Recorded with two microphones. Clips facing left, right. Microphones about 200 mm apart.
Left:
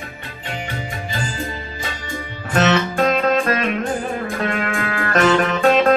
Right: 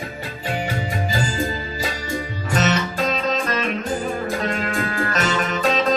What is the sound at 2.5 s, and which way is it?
Music, 55° left (ahead or behind).